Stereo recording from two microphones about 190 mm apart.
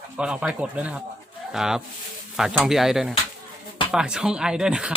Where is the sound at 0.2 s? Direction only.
5° right (ahead or behind).